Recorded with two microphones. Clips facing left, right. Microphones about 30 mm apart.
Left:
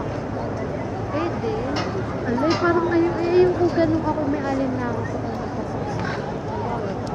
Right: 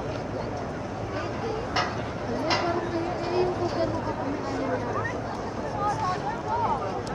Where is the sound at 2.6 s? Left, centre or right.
Centre.